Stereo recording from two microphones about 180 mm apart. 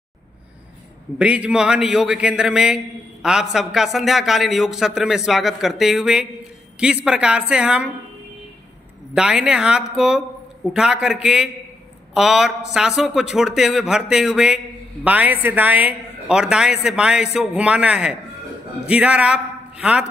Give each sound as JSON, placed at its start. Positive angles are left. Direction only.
{"t": 1.1, "sound": "a man's voice", "side_deg": -5}
{"t": 9.1, "sound": "a man's voice", "side_deg": -5}